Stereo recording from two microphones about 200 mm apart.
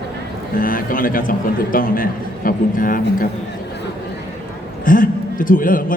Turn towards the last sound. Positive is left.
turn(degrees=45)  # may be behind; listen again after turning